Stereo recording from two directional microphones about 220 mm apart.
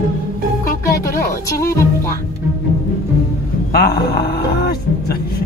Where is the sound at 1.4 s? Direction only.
10° left (ahead or behind).